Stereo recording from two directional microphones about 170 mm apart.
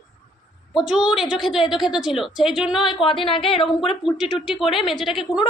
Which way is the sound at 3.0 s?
30° left (ahead or behind).